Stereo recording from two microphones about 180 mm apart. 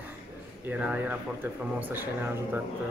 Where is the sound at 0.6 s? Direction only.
10° right (ahead or behind).